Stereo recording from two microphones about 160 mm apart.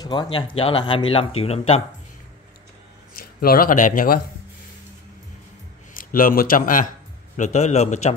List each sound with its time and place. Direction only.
0.0 s speech: 25° left (ahead or behind)
3.2 s speech: 65° left (ahead or behind)
5.9 s speech: 60° left (ahead or behind)
7.3 s a man's voice: 45° left (ahead or behind)